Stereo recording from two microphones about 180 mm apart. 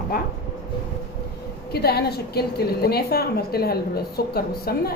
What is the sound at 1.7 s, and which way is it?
A woman's voice, 60° left (ahead or behind).